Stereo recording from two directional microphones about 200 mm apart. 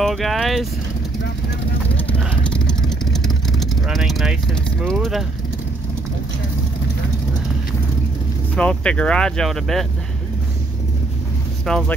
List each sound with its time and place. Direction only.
0.0 s speech: centre (ahead or behind)
2.0 s vehicle: 5° left (ahead or behind)
8.5 s speech: 5° left (ahead or behind)
11.7 s speech: 5° left (ahead or behind)